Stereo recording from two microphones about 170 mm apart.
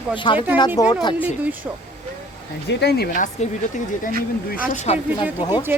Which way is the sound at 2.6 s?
70° left (ahead or behind).